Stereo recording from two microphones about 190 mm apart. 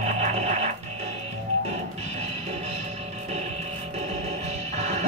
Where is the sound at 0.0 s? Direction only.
35° right (ahead or behind).